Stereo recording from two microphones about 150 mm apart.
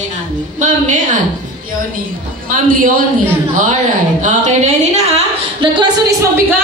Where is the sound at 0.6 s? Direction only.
55° right (ahead or behind).